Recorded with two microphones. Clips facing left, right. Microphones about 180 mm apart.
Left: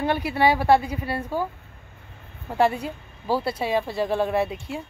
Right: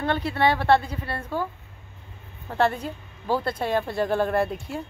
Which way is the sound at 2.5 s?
10° left (ahead or behind).